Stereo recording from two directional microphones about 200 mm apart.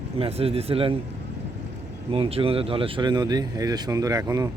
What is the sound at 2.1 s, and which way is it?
Speech, 30° right (ahead or behind).